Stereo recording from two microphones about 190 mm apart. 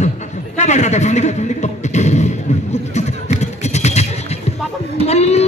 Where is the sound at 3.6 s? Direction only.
35° left (ahead or behind).